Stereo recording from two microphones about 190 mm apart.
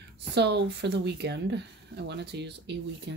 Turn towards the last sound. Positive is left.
turn(degrees=-65)  # may be behind; listen again after turning